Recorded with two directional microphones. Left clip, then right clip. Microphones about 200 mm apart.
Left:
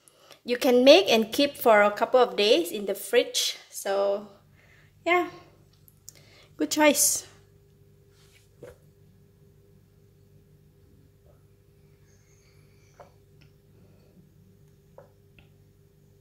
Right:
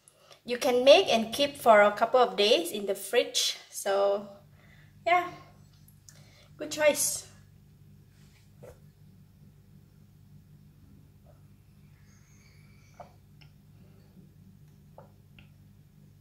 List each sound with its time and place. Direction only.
0.3 s a woman's voice: 50° left (ahead or behind)
6.3 s a woman's voice: 50° left (ahead or behind)